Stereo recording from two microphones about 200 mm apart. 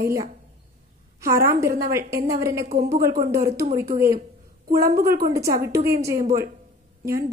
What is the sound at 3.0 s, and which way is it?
Speech, 45° right (ahead or behind).